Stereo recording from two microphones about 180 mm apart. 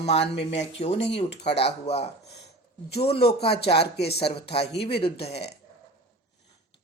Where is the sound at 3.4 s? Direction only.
35° left (ahead or behind).